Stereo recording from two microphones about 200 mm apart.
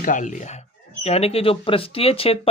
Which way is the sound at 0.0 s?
40° left (ahead or behind).